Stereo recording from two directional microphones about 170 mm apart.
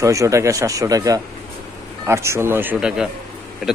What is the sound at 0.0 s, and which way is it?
A man's voice, 20° right (ahead or behind).